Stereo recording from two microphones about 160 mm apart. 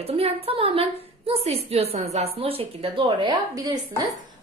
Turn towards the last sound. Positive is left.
turn(degrees=-25)  # may be behind; listen again after turning